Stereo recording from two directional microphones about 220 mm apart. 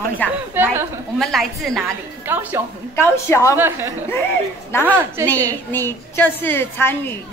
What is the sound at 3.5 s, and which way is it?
Speech, 10° right (ahead or behind).